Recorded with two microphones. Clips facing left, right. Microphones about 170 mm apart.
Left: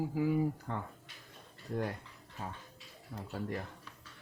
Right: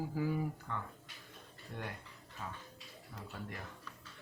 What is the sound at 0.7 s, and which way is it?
Speech, 35° left (ahead or behind).